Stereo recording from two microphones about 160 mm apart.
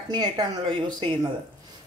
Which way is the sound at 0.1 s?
25° right (ahead or behind).